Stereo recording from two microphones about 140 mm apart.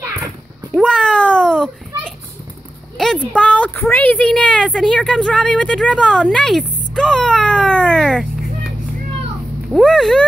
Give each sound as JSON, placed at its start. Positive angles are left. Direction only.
{"t": 0.7, "sound": "cat", "side_deg": 5}
{"t": 3.0, "sound": "a woman's voice", "side_deg": 5}